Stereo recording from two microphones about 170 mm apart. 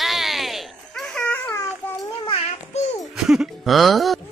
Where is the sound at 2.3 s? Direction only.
40° left (ahead or behind).